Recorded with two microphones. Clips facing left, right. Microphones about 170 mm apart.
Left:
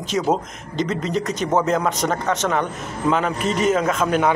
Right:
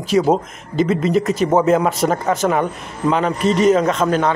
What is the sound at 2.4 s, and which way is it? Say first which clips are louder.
Speech: right 5 dB; 15° right (ahead or behind).